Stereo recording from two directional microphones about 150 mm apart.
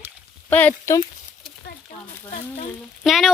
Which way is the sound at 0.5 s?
10° left (ahead or behind).